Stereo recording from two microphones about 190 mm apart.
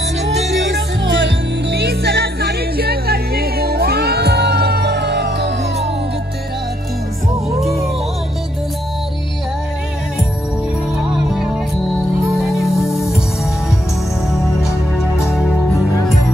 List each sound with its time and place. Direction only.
0.6 s music: 70° right (ahead or behind)
11.1 s music: 5° right (ahead or behind)
14.3 s music: centre (ahead or behind)